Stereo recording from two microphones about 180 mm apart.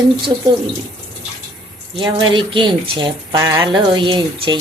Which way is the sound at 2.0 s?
25° right (ahead or behind).